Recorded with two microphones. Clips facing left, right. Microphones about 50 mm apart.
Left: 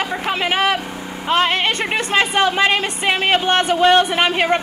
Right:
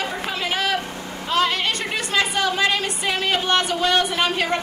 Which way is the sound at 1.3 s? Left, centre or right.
Left.